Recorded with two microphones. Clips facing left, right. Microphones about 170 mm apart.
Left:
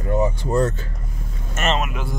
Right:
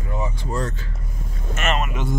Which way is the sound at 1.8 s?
Centre (ahead or behind).